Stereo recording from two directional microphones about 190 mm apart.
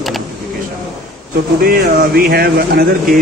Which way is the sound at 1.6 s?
50° right (ahead or behind).